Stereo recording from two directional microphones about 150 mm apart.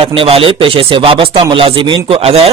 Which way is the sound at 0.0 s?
40° right (ahead or behind).